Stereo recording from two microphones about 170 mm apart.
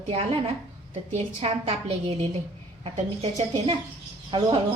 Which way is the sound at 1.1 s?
40° right (ahead or behind).